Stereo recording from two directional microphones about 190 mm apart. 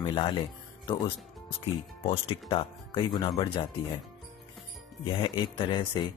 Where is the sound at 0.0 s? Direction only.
25° left (ahead or behind).